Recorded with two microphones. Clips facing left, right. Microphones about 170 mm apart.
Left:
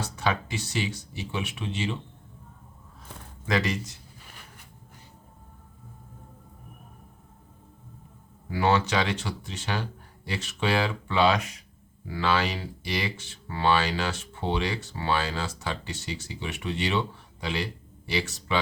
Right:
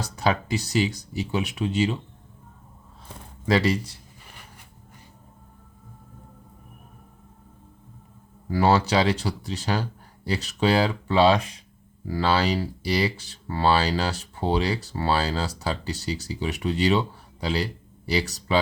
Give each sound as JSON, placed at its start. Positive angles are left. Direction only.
{"t": 0.0, "sound": "speech", "side_deg": -35}
{"t": 3.4, "sound": "speech", "side_deg": -30}
{"t": 8.4, "sound": "speech", "side_deg": -35}